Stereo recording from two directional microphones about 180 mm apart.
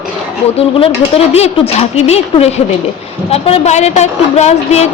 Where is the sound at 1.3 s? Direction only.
35° left (ahead or behind).